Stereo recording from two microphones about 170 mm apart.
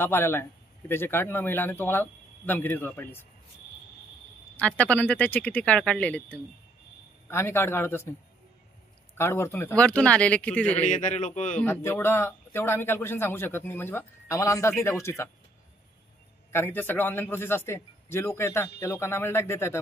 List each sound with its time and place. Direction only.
0.0 s speech: 15° left (ahead or behind)
4.6 s speech: 10° left (ahead or behind)
9.1 s speech: 15° left (ahead or behind)
10.9 s a man's voice: 45° left (ahead or behind)
11.5 s speech: 15° left (ahead or behind)
16.5 s speech: 15° left (ahead or behind)